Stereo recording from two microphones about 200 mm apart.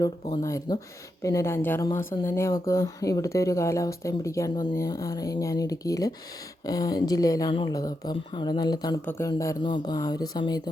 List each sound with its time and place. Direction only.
0.0 s a woman's voice: 15° left (ahead or behind)